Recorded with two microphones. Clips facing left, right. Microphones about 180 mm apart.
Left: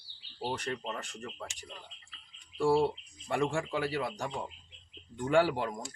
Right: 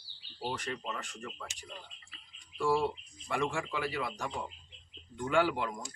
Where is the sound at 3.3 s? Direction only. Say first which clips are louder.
Left 3 dB; 35° left (ahead or behind).